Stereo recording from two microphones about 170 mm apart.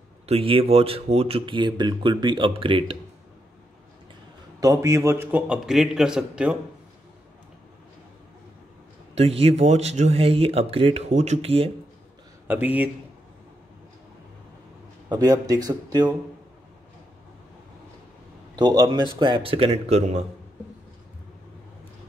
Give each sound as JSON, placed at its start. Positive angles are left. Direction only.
{"t": 0.3, "sound": "speech", "side_deg": -35}
{"t": 4.6, "sound": "a man's voice", "side_deg": -20}
{"t": 9.1, "sound": "speech", "side_deg": -35}
{"t": 12.4, "sound": "speech", "side_deg": -10}
{"t": 15.0, "sound": "speech", "side_deg": -25}
{"t": 18.6, "sound": "speech", "side_deg": -25}